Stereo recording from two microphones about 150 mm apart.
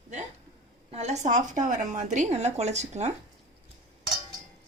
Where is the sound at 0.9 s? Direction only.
45° right (ahead or behind).